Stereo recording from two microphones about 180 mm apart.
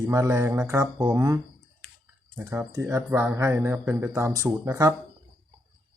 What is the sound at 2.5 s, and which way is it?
Speech, 15° right (ahead or behind).